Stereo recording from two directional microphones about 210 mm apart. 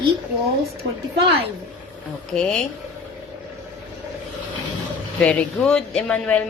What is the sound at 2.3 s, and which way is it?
Speech, 5° left (ahead or behind).